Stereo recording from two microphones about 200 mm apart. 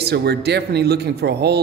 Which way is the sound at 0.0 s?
55° right (ahead or behind).